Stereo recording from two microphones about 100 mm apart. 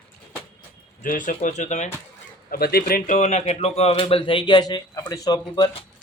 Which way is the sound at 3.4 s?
90° left.